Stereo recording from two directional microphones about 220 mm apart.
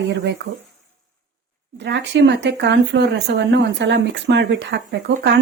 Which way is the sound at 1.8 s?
55° right (ahead or behind).